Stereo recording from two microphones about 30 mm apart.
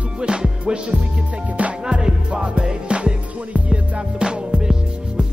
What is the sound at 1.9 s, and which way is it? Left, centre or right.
Music, right.